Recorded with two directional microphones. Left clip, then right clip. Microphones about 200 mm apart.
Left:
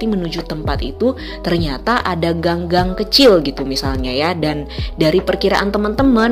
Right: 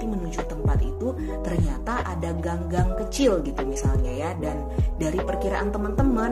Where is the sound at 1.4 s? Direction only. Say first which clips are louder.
Left 15 dB; 45° left (ahead or behind).